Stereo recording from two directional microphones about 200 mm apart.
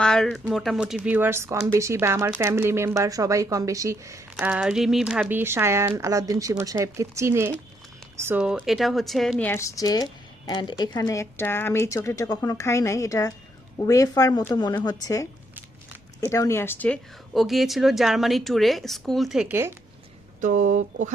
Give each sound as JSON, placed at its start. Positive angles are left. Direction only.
{"t": 0.0, "sound": "a woman's voice", "side_deg": 5}
{"t": 20.4, "sound": "speech", "side_deg": -40}